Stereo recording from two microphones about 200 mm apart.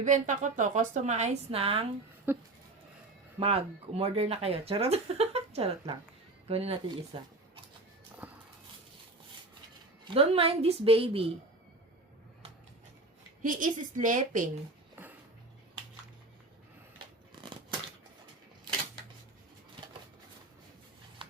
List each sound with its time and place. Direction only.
0.0 s a woman's voice: 40° right (ahead or behind)
2.3 s goat: 10° right (ahead or behind)
3.4 s speech: 30° right (ahead or behind)
8.2 s a sound: 5° right (ahead or behind)
10.0 s speech: 30° right (ahead or behind)
13.4 s a woman's voice: 40° right (ahead or behind)
17.4 s a sound: 25° right (ahead or behind)